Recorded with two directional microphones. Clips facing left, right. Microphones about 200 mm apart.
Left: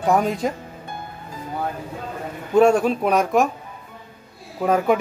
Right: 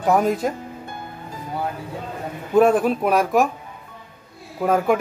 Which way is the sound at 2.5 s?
5° right (ahead or behind).